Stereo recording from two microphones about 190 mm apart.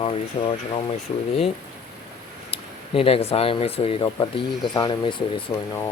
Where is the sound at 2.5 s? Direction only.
30° left (ahead or behind).